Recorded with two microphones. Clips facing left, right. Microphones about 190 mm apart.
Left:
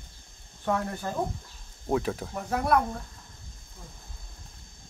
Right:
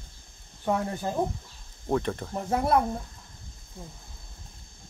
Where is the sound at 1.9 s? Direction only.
5° left (ahead or behind).